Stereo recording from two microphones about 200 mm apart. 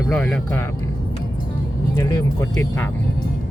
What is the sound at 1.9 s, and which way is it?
Speech, 15° left (ahead or behind).